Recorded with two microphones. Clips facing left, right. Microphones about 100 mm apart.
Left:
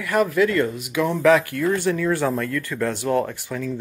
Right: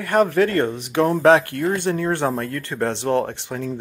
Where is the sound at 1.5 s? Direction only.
60° left (ahead or behind).